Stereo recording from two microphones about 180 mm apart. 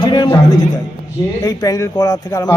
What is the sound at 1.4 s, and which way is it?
Speech, 20° left (ahead or behind).